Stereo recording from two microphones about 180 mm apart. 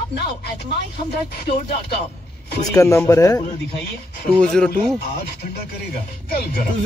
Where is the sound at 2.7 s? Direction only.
15° left (ahead or behind).